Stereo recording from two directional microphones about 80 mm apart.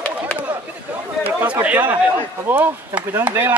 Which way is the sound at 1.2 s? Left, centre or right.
Centre.